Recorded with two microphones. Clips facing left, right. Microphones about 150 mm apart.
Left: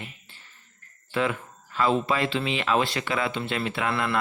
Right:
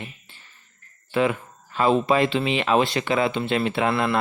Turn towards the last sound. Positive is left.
turn(degrees=-25)  # may be behind; listen again after turning